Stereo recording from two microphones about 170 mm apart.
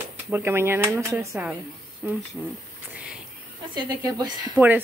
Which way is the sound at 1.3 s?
5° right (ahead or behind).